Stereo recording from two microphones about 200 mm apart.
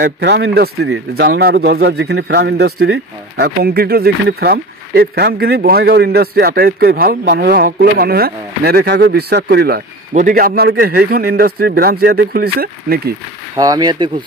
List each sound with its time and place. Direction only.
0.0 s speech: 55° right (ahead or behind)
13.6 s speech: 20° right (ahead or behind)